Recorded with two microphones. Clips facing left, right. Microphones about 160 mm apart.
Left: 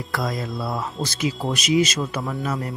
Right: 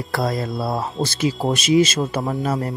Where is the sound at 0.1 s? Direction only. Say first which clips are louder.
Right 4 dB; 35° right (ahead or behind).